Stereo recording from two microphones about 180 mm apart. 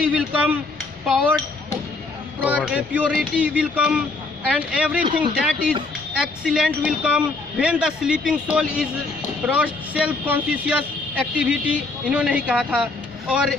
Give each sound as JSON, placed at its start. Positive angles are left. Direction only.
{"t": 0.1, "sound": "cutlery", "side_deg": -5}
{"t": 1.0, "sound": "speech", "side_deg": 0}
{"t": 2.4, "sound": "speech", "side_deg": -5}
{"t": 5.0, "sound": "speech", "side_deg": -30}
{"t": 6.1, "sound": "speech", "side_deg": -5}